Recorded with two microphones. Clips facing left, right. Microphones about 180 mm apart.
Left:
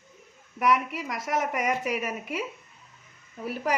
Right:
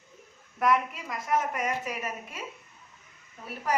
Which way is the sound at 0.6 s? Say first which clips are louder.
Left 1 dB; 85° left.